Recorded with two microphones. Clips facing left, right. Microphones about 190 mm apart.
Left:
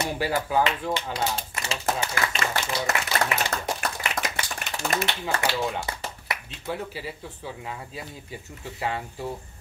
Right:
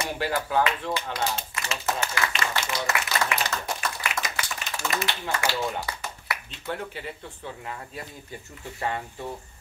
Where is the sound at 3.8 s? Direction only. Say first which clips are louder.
Left 1 dB; 60° left (ahead or behind).